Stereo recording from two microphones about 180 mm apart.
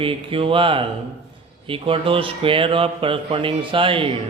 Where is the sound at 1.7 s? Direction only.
30° right (ahead or behind).